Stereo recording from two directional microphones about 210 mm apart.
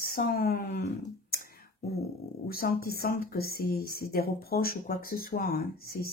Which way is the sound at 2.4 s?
45° left (ahead or behind).